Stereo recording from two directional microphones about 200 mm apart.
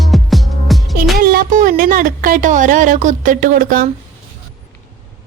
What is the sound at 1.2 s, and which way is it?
A woman's voice, 50° right (ahead or behind).